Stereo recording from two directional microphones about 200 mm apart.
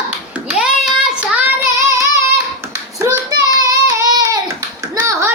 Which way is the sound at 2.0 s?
15° right (ahead or behind).